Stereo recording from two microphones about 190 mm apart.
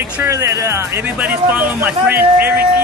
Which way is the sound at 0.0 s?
15° right (ahead or behind).